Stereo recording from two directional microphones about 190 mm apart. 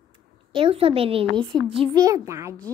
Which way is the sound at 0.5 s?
30° right (ahead or behind).